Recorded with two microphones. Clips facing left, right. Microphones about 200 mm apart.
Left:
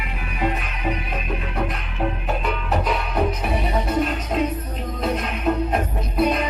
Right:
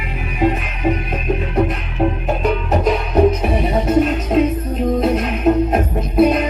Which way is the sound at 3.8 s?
45° right (ahead or behind).